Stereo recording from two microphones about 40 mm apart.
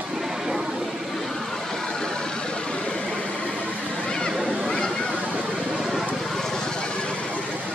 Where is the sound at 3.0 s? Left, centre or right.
Left.